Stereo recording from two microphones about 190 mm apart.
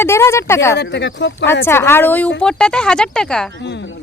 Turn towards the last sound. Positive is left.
turn(degrees=70)  # may be behind; listen again after turning